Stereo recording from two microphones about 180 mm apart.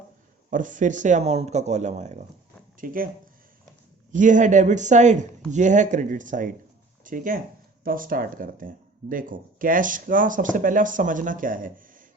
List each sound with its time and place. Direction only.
0.5 s speech: 45° right (ahead or behind)
2.8 s speech: 50° right (ahead or behind)
4.1 s speech: 45° right (ahead or behind)